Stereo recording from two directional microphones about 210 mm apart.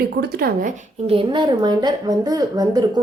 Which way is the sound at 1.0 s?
25° right (ahead or behind).